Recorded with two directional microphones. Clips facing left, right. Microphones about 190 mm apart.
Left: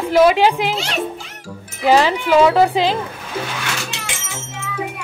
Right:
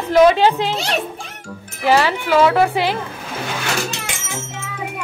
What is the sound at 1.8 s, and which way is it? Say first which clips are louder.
A woman's voice: left 2 dB; 20° left (ahead or behind).